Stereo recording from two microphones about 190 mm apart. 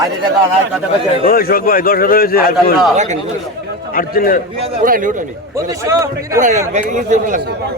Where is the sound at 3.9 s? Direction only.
50° left (ahead or behind).